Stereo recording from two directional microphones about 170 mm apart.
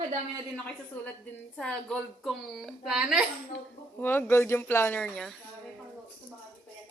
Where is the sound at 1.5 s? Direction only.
5° left (ahead or behind).